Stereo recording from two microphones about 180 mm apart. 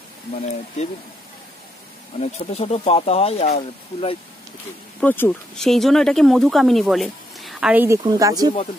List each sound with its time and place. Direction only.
2.1 s speech: 35° left (ahead or behind)
5.0 s speech: 10° left (ahead or behind); by 8.5 s 20° right (ahead or behind)